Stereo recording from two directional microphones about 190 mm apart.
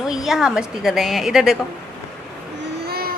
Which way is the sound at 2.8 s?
55° right (ahead or behind).